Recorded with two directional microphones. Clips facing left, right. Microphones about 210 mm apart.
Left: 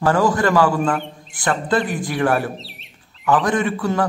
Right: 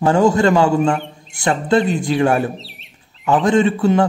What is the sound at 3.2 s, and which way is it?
Speech, 25° right (ahead or behind).